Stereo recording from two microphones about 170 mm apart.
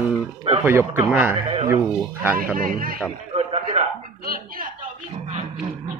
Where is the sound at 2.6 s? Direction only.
55° right (ahead or behind).